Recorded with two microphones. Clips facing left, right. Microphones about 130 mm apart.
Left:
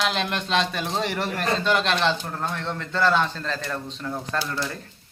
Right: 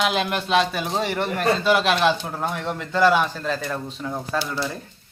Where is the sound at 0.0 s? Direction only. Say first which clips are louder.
Right 3 dB; 5° right (ahead or behind).